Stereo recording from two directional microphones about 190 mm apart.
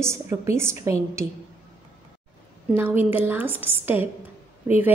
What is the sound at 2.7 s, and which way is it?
A woman's voice, 10° right (ahead or behind).